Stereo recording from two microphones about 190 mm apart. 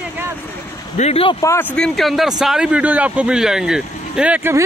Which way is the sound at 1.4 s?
15° left (ahead or behind).